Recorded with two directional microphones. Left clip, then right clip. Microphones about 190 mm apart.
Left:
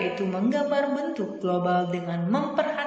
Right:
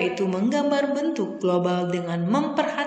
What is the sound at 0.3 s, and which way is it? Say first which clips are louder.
A woman's voice: right 2 dB; 50° right (ahead or behind).